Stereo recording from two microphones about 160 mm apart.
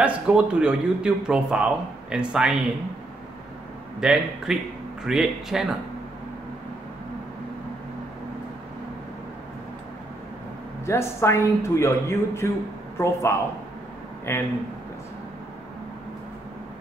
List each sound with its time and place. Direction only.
0.0 s speech: 5° right (ahead or behind)
4.0 s speech: centre (ahead or behind)
10.9 s a woman's voice: 15° left (ahead or behind)